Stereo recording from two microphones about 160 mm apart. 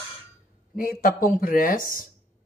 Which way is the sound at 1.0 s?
60° left (ahead or behind).